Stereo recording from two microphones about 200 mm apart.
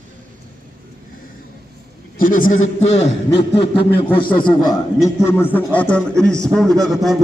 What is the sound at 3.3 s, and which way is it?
A man's voice, 25° left (ahead or behind).